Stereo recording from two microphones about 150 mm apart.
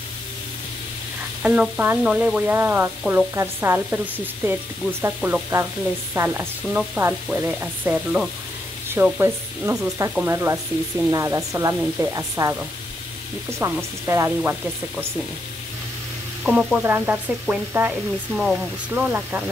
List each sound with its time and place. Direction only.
1.4 s frying: 5° right (ahead or behind)
11.1 s speech: 20° right (ahead or behind)
16.4 s frying: 5° right (ahead or behind)